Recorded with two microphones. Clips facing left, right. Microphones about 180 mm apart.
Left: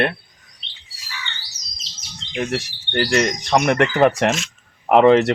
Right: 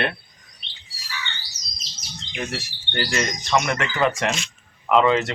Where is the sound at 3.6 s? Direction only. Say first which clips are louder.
Left 8 dB; 60° left (ahead or behind).